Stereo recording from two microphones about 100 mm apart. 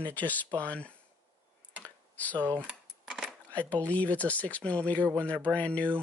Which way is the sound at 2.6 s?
Centre (ahead or behind).